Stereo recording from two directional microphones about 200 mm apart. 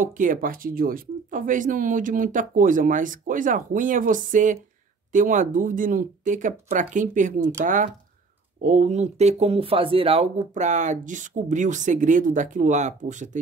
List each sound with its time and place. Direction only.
0.0 s speech: 40° right (ahead or behind)